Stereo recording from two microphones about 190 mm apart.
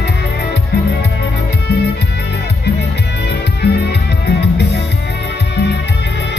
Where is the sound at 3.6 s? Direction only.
60° left (ahead or behind).